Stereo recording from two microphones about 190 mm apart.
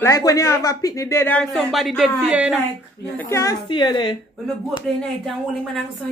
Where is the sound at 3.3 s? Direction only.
20° left (ahead or behind).